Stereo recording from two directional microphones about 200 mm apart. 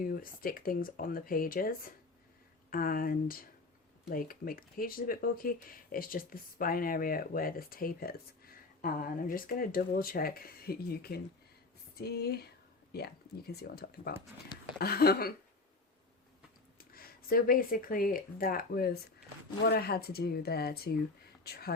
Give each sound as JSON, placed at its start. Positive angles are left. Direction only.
{"t": 0.0, "sound": "speech", "side_deg": 45}
{"t": 16.9, "sound": "speech", "side_deg": 50}